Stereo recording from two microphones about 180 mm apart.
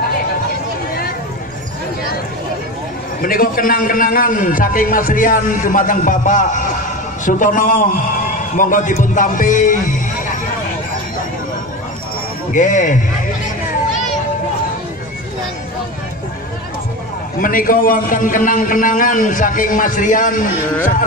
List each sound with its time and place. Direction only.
3.2 s a man's voice: 50° left (ahead or behind)
12.5 s a man's voice: 45° left (ahead or behind)
17.4 s a man's voice: 50° left (ahead or behind)